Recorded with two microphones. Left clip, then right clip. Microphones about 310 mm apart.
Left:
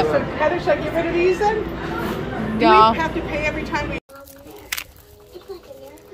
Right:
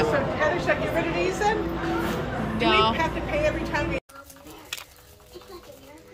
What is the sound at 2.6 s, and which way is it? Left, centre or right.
Speech, centre.